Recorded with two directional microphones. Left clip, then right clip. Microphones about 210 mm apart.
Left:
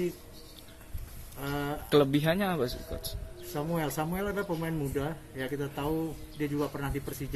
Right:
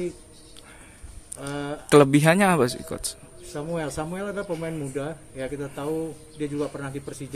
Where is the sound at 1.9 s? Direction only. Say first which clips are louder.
Right 9 dB; 40° right (ahead or behind).